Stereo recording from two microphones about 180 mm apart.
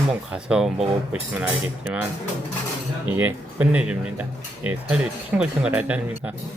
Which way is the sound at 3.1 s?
10° right (ahead or behind).